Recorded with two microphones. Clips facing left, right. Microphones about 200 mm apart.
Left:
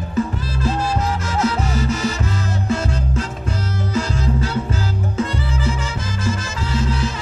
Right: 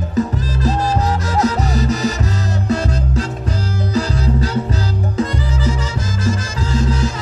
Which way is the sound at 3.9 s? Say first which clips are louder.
Right 3 dB; 40° right (ahead or behind).